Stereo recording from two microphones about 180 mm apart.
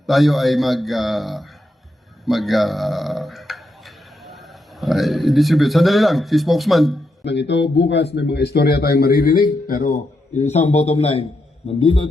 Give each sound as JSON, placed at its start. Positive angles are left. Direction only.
{"t": 0.0, "sound": "a man's voice", "side_deg": 0}
{"t": 7.3, "sound": "a man's voice", "side_deg": 75}